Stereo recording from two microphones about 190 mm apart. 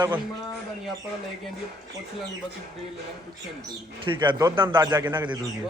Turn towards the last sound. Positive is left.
turn(degrees=-25)  # may be behind; listen again after turning